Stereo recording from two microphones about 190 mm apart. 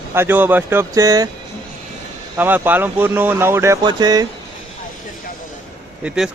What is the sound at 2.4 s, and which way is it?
Speech, 10° right (ahead or behind).